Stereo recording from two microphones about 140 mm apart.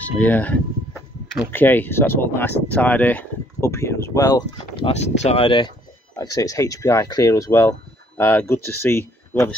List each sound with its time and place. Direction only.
0.0 s speech: 10° left (ahead or behind)
4.7 s speech: 45° left (ahead or behind)
6.1 s speech: 25° left (ahead or behind)